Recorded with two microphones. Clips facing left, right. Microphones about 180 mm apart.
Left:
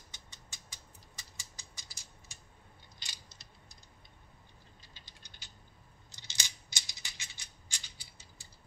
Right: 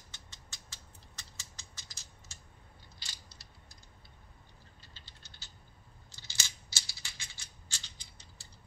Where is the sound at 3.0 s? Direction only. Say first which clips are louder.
Left 1 dB; 20° left (ahead or behind).